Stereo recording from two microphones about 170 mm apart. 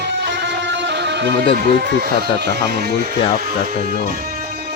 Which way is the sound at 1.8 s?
70° right (ahead or behind).